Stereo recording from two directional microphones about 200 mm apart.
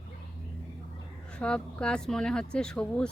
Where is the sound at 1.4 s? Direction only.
5° left (ahead or behind).